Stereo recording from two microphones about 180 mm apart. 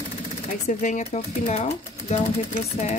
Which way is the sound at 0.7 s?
45° left (ahead or behind).